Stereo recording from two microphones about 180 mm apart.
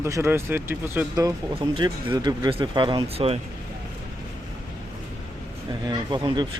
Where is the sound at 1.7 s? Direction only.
25° right (ahead or behind).